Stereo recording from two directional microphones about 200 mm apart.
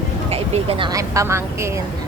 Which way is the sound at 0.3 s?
30° right (ahead or behind).